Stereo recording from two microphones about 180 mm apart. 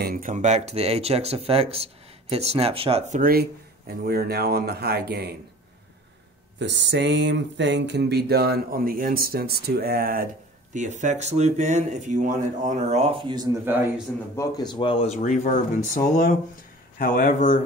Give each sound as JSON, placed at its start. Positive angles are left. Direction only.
{"t": 0.0, "sound": "speech", "side_deg": -50}
{"t": 3.2, "sound": "speech", "side_deg": -55}
{"t": 6.6, "sound": "speech", "side_deg": -75}
{"t": 13.2, "sound": "speech", "side_deg": -25}
{"t": 13.7, "sound": "a man's voice", "side_deg": -10}
{"t": 14.3, "sound": "speech", "side_deg": 20}